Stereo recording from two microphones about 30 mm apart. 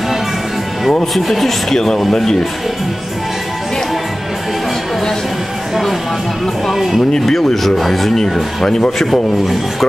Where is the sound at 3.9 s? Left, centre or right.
Centre.